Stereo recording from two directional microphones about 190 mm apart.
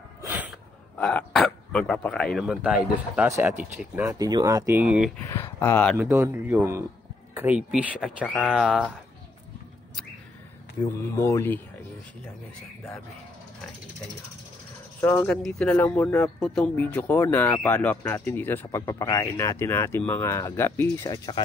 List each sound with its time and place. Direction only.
0.9 s speech: 5° left (ahead or behind)
5.2 s speech: 10° left (ahead or behind)
5.9 s speech: 15° right (ahead or behind)
8.6 s speech: 5° left (ahead or behind)
11.1 s speech: 15° left (ahead or behind)
15.0 s speech: 10° left (ahead or behind)